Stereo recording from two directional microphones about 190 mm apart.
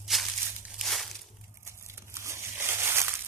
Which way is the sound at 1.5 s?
15° right (ahead or behind).